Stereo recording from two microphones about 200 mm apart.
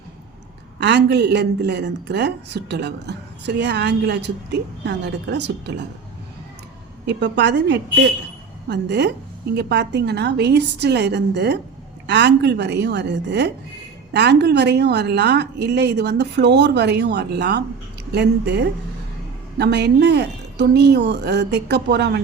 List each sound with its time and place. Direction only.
0.8 s speech: 60° right (ahead or behind)
7.1 s speech: 60° right (ahead or behind)